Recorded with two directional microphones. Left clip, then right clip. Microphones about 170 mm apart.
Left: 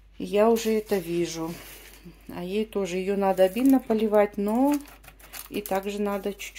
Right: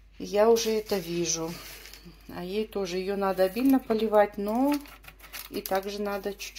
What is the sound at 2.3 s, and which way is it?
Speech, 15° left (ahead or behind).